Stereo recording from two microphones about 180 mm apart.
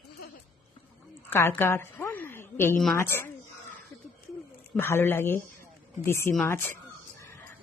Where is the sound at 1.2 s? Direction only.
10° left (ahead or behind).